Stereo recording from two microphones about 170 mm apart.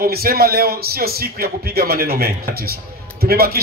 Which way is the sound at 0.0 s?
65° right (ahead or behind).